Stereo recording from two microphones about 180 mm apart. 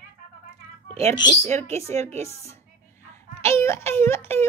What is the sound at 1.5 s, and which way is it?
Speech, 15° left (ahead or behind).